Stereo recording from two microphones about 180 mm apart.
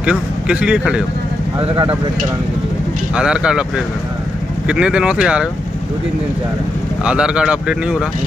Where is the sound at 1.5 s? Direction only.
25° right (ahead or behind).